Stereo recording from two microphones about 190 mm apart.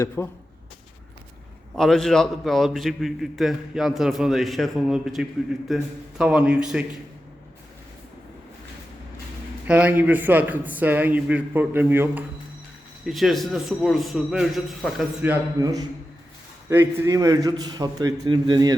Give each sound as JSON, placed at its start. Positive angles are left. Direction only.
{"t": 0.2, "sound": "speech", "side_deg": 15}
{"t": 1.7, "sound": "a man's voice", "side_deg": 0}
{"t": 9.6, "sound": "a man's voice", "side_deg": -5}
{"t": 15.6, "sound": "a man's voice", "side_deg": -20}